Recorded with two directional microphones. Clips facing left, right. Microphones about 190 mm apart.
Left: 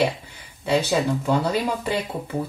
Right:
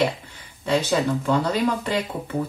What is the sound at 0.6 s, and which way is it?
Speech, 10° left (ahead or behind).